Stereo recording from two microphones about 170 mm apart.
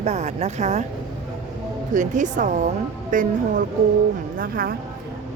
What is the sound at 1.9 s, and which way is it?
A woman's voice, 45° right (ahead or behind).